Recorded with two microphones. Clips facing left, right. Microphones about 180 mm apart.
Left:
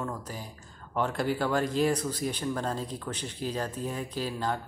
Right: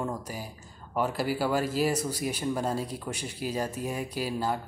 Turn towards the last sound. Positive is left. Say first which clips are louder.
# right 1 dB
turn(degrees=-10)  # may be behind; listen again after turning